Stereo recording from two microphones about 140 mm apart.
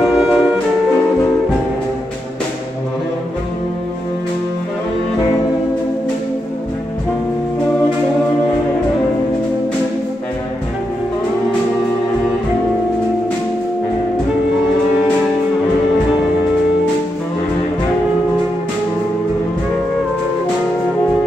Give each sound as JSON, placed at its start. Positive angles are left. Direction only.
{"t": 0.0, "sound": "music", "side_deg": -5}